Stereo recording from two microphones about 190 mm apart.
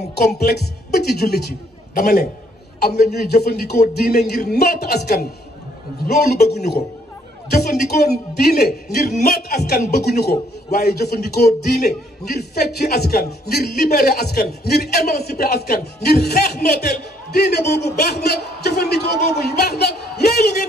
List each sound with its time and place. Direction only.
0.3 s a man's voice: 55° left (ahead or behind)